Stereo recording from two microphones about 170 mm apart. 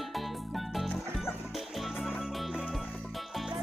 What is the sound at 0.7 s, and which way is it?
Music, centre (ahead or behind).